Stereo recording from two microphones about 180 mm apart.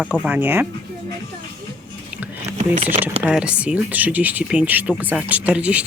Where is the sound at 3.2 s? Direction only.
5° right (ahead or behind).